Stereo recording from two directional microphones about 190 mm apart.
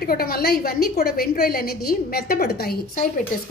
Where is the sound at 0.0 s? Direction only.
50° left (ahead or behind).